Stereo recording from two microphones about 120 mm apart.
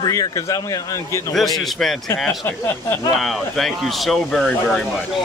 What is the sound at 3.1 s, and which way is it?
Speech, centre (ahead or behind).